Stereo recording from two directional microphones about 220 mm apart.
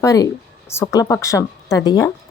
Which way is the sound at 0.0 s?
15° left (ahead or behind).